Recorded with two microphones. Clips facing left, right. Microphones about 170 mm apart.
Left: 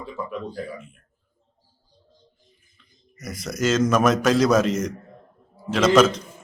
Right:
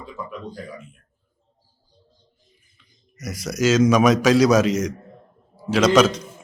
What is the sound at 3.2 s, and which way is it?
Speech, 80° right.